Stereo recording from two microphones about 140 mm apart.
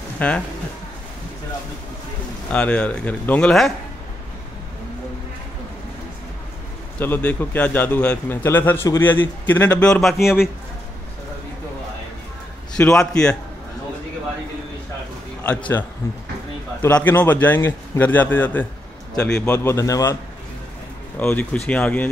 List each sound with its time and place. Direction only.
0.2 s a man's voice: 10° left (ahead or behind)
2.5 s a man's voice: 10° left (ahead or behind)
7.0 s a man's voice: 15° left (ahead or behind); by 10.5 s 5° right (ahead or behind)
12.7 s a man's voice: 5° left (ahead or behind)
16.8 s a man's voice: 15° left (ahead or behind)
21.2 s a man's voice: 10° left (ahead or behind)